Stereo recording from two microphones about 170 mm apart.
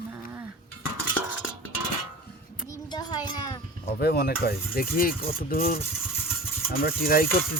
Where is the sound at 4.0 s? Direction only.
70° left (ahead or behind).